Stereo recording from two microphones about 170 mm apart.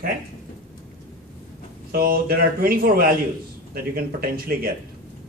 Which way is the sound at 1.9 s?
60° right (ahead or behind).